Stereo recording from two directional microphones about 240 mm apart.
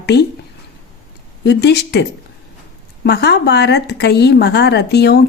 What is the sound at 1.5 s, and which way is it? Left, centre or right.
A woman's voice, left.